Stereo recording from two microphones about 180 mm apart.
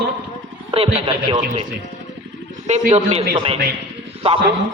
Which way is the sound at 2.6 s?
40° right (ahead or behind).